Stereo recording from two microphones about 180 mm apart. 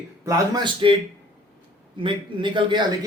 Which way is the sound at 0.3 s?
20° right (ahead or behind).